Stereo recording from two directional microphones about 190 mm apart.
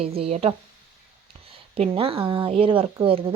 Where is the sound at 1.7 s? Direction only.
30° right (ahead or behind).